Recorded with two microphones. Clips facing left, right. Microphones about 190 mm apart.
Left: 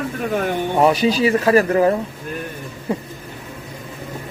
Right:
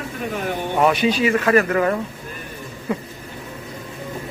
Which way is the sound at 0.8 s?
35° left (ahead or behind).